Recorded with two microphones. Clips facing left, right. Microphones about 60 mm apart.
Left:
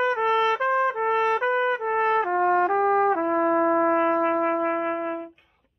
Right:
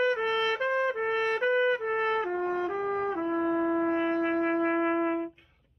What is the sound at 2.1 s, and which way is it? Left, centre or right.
Trumpet, left.